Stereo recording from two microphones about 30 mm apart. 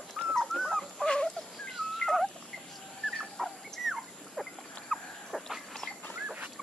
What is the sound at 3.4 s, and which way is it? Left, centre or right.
Dog, left.